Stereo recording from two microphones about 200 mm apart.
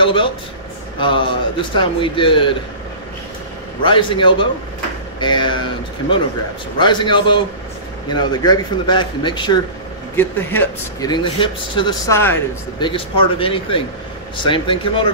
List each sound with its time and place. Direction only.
0.0 s a man's voice: 25° left (ahead or behind)
3.8 s speech: 25° left (ahead or behind)
10.1 s speech: 10° left (ahead or behind)
11.1 s speech: 25° left (ahead or behind)
12.1 s speech: 10° left (ahead or behind)
12.7 s speech: 25° left (ahead or behind)